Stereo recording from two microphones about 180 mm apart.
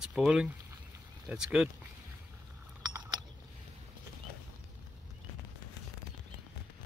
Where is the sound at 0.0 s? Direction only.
5° right (ahead or behind).